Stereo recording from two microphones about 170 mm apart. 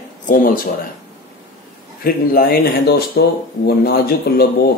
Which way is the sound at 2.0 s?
60° left (ahead or behind).